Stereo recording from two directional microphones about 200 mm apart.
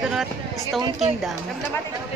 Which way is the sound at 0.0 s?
5° right (ahead or behind).